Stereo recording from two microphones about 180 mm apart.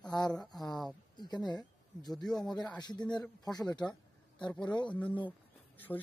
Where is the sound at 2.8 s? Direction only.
25° left (ahead or behind).